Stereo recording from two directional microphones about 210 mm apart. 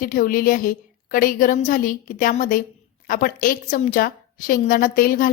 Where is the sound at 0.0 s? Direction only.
40° left (ahead or behind).